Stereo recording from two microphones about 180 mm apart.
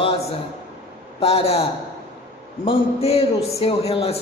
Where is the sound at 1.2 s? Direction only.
35° left (ahead or behind).